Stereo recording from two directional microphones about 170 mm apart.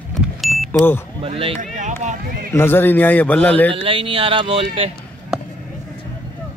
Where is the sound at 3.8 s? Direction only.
30° right (ahead or behind).